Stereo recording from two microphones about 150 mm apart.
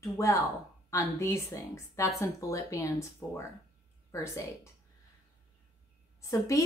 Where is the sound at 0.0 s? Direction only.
20° left (ahead or behind).